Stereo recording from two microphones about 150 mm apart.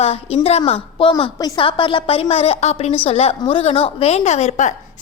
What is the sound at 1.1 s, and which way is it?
A woman's voice, 25° left (ahead or behind).